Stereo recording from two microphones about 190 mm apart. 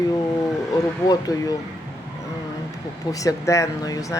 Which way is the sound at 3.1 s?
15° left (ahead or behind).